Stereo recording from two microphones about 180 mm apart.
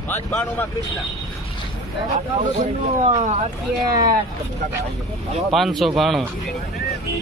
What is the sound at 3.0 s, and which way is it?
Speech, 35° right (ahead or behind).